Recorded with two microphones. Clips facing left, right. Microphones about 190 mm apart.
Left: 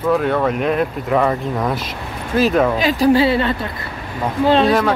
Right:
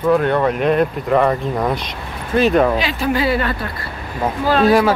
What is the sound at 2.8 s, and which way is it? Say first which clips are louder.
Speech: left 5 dB; 40° left (ahead or behind).